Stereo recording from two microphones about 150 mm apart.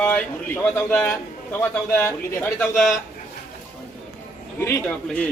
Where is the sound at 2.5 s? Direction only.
Centre (ahead or behind).